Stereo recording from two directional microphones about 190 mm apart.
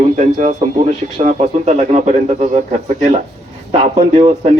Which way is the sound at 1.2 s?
40° right (ahead or behind).